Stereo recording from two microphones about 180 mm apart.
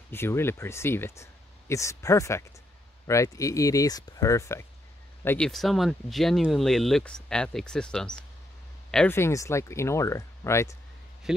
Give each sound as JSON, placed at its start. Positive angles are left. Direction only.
{"t": 0.1, "sound": "speech", "side_deg": 15}
{"t": 5.5, "sound": "speech", "side_deg": 0}
{"t": 11.3, "sound": "speech", "side_deg": -5}